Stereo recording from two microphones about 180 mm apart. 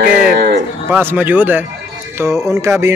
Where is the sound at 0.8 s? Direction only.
10° right (ahead or behind).